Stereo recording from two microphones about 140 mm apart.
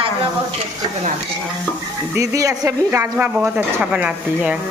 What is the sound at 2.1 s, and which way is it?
Speech, 25° right (ahead or behind).